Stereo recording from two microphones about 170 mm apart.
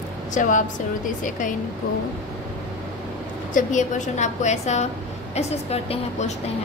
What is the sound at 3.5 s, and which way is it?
A woman's voice, 50° left (ahead or behind).